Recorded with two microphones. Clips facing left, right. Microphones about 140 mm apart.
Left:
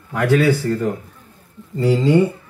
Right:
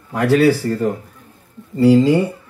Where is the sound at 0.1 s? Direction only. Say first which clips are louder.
Right 2 dB; 35° right (ahead or behind).